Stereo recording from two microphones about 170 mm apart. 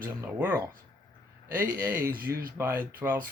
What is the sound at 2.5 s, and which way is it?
Speech, 15° right (ahead or behind).